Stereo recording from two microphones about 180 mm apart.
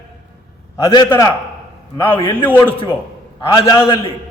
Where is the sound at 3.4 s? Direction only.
25° left (ahead or behind).